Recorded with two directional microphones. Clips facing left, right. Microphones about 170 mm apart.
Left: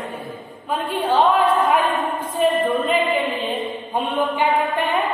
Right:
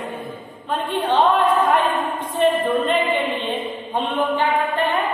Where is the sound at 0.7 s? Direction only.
5° left (ahead or behind).